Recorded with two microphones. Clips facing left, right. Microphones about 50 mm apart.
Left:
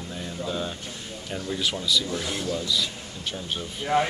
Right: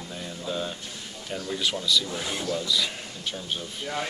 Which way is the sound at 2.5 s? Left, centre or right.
Centre.